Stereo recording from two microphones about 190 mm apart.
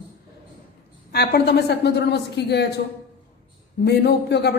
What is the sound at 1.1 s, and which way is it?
A woman's voice, 60° left (ahead or behind).